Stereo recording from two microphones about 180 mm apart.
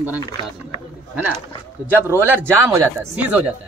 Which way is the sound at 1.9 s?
15° right (ahead or behind).